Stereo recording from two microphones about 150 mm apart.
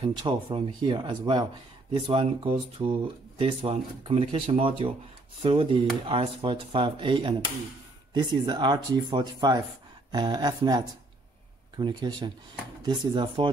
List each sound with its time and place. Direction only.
0.0 s speech: 30° right (ahead or behind)